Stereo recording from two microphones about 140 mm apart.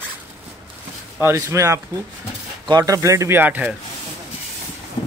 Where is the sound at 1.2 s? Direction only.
20° right (ahead or behind).